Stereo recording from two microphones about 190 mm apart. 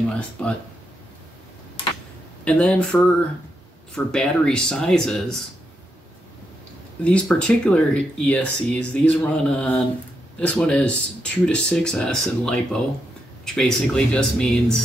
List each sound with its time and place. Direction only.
0.1 s speech: 5° left (ahead or behind)
2.4 s speech: 5° left (ahead or behind)
7.1 s speech: 5° left (ahead or behind)
13.6 s speech: 5° left (ahead or behind)